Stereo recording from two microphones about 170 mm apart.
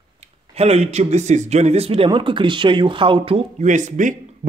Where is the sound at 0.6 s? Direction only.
40° right (ahead or behind).